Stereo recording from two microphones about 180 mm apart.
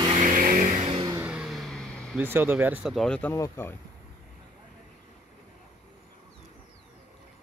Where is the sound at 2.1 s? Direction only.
10° right (ahead or behind); by 3.7 s 15° left (ahead or behind).